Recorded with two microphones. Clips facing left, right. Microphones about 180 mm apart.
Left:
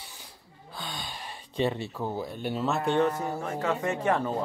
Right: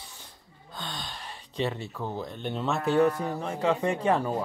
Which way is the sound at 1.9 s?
10° left (ahead or behind).